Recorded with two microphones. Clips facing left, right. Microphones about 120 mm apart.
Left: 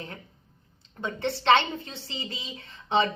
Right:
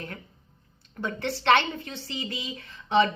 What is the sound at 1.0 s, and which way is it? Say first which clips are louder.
Speech: left 1 dB; 25° left (ahead or behind).